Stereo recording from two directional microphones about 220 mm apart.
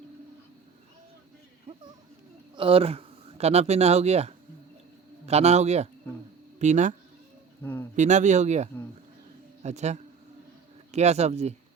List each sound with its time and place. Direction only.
2.6 s a man's voice: 25° right (ahead or behind)
7.6 s a sound: 10° left (ahead or behind)
7.9 s a man's voice: 35° right (ahead or behind)